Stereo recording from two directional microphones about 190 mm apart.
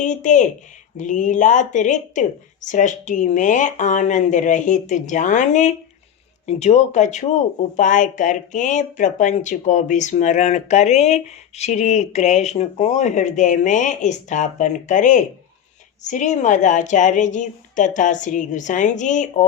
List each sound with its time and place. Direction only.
0.0 s speech: 40° left (ahead or behind)